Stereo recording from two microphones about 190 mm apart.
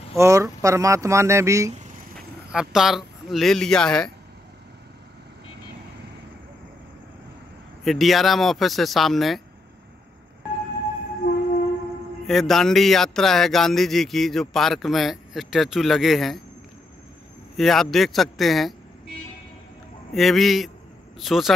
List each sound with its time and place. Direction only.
0.1 s speech: 15° right (ahead or behind)
2.1 s speech: centre (ahead or behind)
7.8 s speech: centre (ahead or behind)
11.2 s train: 50° left (ahead or behind)
12.3 s speech: centre (ahead or behind)
17.6 s speech: centre (ahead or behind)
20.2 s speech: centre (ahead or behind)